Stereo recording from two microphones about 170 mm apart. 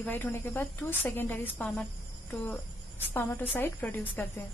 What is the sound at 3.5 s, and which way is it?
Speech, 10° left (ahead or behind).